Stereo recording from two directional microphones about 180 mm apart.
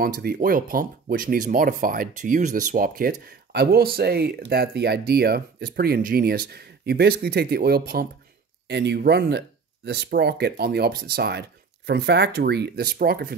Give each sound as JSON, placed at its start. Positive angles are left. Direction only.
{"t": 0.0, "sound": "speech", "side_deg": -55}
{"t": 8.6, "sound": "speech", "side_deg": -70}